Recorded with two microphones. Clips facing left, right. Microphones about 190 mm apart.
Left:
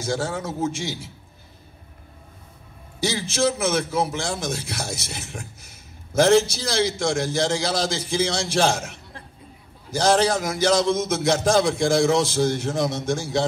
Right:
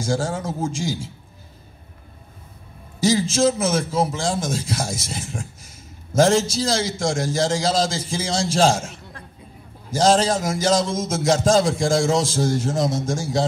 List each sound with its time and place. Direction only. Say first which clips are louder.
0.0 s a man's voice: right 2 dB; 60° left (ahead or behind)
3.0 s a man's voice: right 5 dB; 65° left (ahead or behind)
10.0 s a man's voice: right 2 dB; 65° left (ahead or behind)